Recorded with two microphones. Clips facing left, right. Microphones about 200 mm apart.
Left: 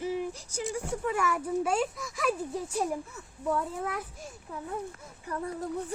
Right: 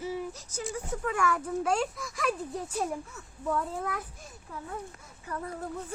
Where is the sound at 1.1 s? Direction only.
5° left (ahead or behind).